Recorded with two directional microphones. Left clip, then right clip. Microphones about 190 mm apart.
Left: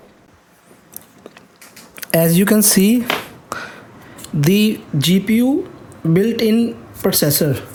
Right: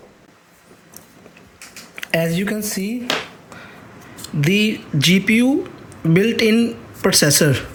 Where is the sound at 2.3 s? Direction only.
50° left (ahead or behind).